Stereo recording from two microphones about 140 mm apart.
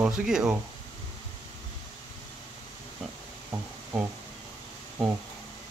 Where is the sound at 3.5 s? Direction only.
15° right (ahead or behind).